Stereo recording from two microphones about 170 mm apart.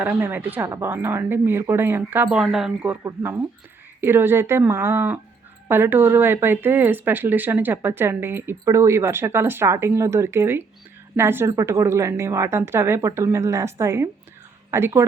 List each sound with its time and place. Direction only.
0.0 s speech: 10° right (ahead or behind)